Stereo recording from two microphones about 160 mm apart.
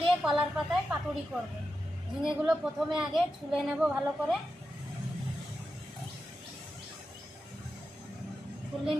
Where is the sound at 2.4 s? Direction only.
5° right (ahead or behind).